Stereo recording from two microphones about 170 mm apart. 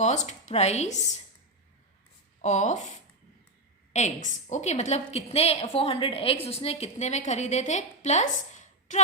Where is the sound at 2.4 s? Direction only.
45° left (ahead or behind).